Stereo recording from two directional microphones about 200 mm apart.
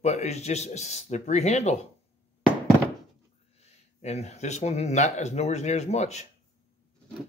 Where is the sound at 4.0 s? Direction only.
35° left (ahead or behind).